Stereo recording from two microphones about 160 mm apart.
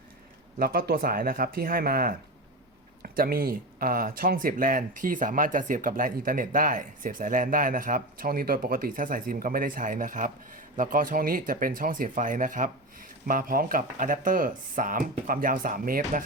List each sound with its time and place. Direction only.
0.6 s speech: 70° right (ahead or behind)